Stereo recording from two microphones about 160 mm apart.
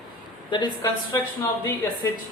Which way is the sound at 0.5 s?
30° left (ahead or behind).